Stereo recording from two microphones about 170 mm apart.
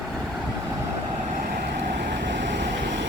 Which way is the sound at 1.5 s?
80° right.